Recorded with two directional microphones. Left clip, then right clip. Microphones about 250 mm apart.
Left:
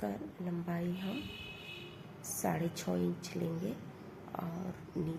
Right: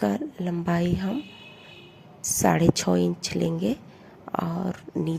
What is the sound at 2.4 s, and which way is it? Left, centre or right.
A woman's voice, right.